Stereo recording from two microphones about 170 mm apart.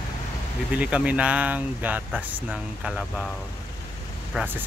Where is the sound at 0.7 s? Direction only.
10° right (ahead or behind).